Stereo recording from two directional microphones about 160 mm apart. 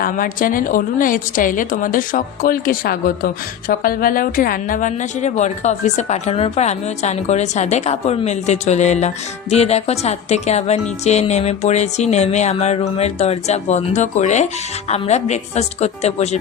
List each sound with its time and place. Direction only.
0.0 s a woman's voice: 60° left (ahead or behind); by 16.4 s 40° left (ahead or behind)